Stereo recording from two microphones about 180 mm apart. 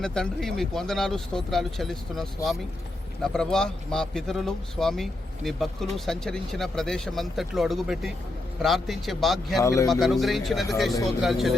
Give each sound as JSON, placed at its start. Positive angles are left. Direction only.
{"t": 0.0, "sound": "speech", "side_deg": 5}
{"t": 9.6, "sound": "speech", "side_deg": 20}
{"t": 9.9, "sound": "speech", "side_deg": 0}